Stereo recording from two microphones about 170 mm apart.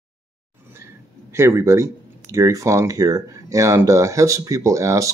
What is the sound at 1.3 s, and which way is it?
Speech, 15° right (ahead or behind).